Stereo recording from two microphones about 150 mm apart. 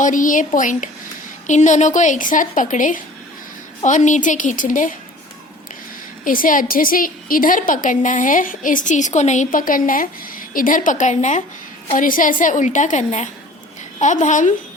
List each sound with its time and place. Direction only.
0.0 s a woman's voice: 60° left (ahead or behind)
6.2 s a woman's voice: 65° left (ahead or behind)
11.9 s a woman's voice: 65° left (ahead or behind)